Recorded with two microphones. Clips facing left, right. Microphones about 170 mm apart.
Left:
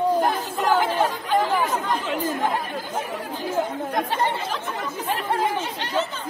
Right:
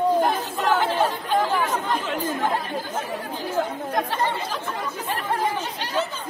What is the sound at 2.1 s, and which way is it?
Chatter, 10° left (ahead or behind).